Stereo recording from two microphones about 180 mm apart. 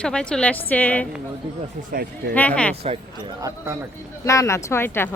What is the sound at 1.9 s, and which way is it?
Speech, 55° right (ahead or behind).